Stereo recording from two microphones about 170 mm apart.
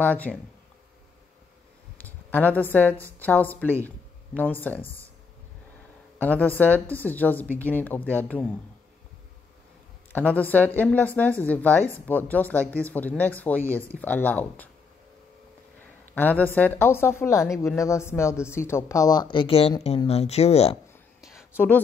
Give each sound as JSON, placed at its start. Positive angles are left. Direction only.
{"t": 0.0, "sound": "speech", "side_deg": 10}
{"t": 2.0, "sound": "a woman's voice", "side_deg": 10}
{"t": 6.1, "sound": "speech", "side_deg": 10}
{"t": 10.1, "sound": "speech", "side_deg": 10}
{"t": 16.2, "sound": "speech", "side_deg": 10}
{"t": 21.3, "sound": "a sound", "side_deg": -5}